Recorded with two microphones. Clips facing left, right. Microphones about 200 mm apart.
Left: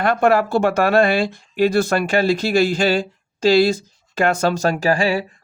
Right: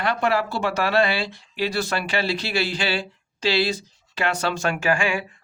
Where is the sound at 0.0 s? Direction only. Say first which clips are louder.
Left 6 dB; 50° left (ahead or behind).